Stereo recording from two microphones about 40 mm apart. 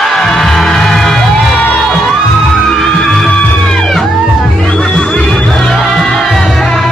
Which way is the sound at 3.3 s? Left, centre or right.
Left.